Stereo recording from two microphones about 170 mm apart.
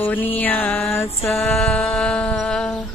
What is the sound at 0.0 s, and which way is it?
Music, 10° left (ahead or behind).